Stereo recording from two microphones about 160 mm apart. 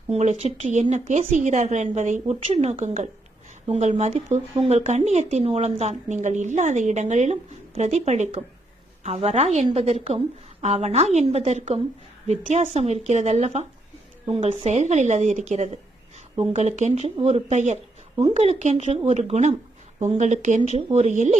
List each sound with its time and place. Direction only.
0.1 s a woman's voice: 45° right (ahead or behind)